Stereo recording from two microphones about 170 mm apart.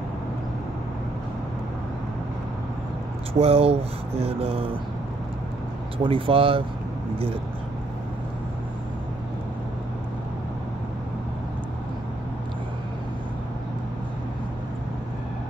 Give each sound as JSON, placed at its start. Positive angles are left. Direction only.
{"t": 3.3, "sound": "speech", "side_deg": -35}
{"t": 6.0, "sound": "speech", "side_deg": -30}